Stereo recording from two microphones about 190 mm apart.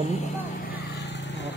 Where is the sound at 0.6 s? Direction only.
60° left (ahead or behind).